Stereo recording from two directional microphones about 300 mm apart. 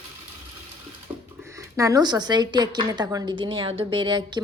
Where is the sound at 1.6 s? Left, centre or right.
Centre.